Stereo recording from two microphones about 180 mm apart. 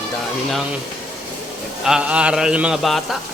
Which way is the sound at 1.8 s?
5° right (ahead or behind).